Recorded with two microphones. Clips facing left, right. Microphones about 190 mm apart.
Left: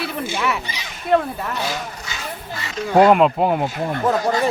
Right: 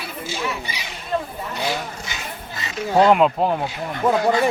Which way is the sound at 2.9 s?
5° left (ahead or behind).